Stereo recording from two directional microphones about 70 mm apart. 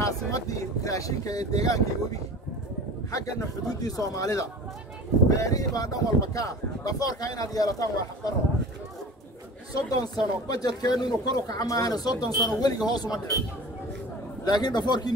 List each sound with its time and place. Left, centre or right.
0.0 s speech: left
3.1 s speech: left
9.8 s speech: left
14.4 s a man's voice: left